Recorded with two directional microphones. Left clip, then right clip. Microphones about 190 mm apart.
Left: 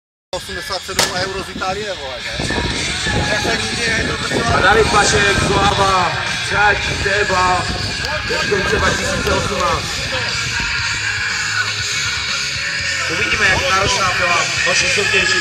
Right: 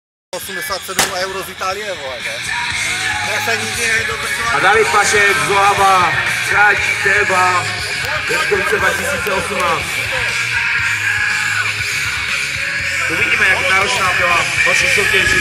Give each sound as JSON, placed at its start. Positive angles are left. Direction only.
{"t": 4.6, "sound": "speech", "side_deg": 5}
{"t": 13.2, "sound": "speech", "side_deg": 20}